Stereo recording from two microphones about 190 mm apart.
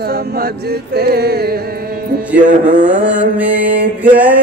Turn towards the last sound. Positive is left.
turn(degrees=-10)  # may be behind; listen again after turning